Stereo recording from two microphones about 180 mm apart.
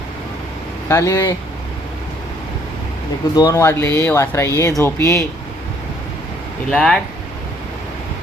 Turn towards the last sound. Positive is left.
turn(degrees=5)  # may be behind; listen again after turning